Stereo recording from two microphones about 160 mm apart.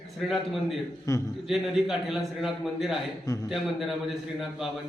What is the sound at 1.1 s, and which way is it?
Speech, 20° left (ahead or behind).